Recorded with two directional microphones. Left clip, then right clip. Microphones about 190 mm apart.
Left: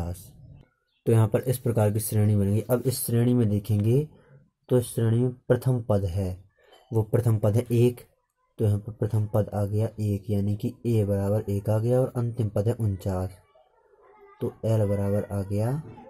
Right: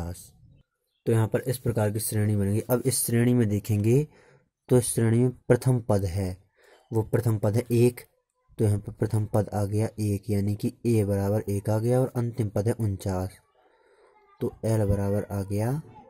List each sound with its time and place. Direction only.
0.0 s a sound: 30° right (ahead or behind)
1.0 s speech: 25° right (ahead or behind)
14.4 s speech: 35° right (ahead or behind)